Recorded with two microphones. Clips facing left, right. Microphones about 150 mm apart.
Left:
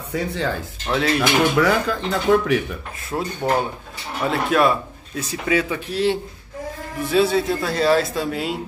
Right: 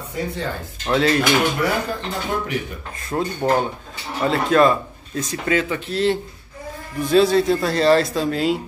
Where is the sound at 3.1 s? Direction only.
5° left (ahead or behind).